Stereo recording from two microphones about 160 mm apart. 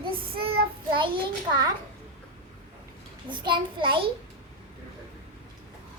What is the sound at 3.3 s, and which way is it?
Speech, 30° right (ahead or behind).